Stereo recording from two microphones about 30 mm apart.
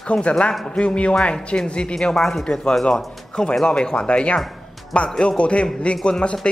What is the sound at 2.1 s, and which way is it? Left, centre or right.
Speech, centre.